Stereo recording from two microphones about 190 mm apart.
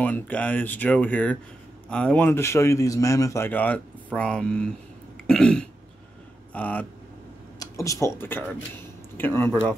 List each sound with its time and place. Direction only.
0.0 s speech: 10° left (ahead or behind)
5.2 s throat clearing: 5° left (ahead or behind)
6.5 s speech: 5° left (ahead or behind)
7.5 s speech: 20° left (ahead or behind)